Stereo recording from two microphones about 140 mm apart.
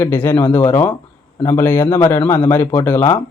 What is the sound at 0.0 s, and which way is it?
A man's voice, 15° left (ahead or behind).